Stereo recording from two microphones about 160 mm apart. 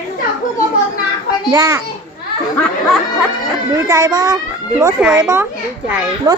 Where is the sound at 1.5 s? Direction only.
25° right (ahead or behind).